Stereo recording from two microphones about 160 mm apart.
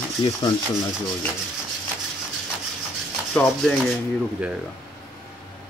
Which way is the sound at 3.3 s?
5° left (ahead or behind).